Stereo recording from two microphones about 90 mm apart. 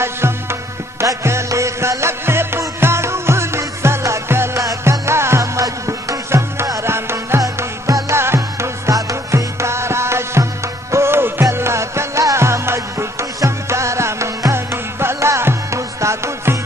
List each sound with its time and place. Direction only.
0.0 s music: 30° right (ahead or behind)